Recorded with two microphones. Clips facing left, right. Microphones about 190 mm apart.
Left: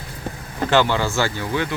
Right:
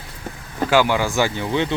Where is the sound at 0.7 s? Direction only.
10° right (ahead or behind).